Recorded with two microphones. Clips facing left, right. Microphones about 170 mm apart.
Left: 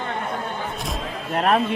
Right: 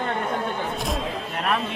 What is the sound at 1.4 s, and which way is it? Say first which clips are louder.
Speech: left 7 dB; 40° left (ahead or behind).